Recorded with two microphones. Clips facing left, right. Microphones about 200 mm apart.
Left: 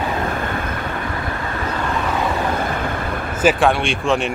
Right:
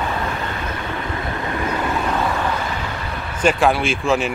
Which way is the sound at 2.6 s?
50° left (ahead or behind).